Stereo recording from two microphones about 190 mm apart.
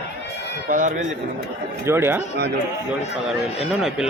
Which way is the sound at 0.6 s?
45° right (ahead or behind).